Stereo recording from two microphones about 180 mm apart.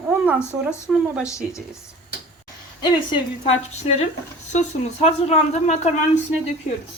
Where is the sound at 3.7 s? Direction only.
40° left (ahead or behind).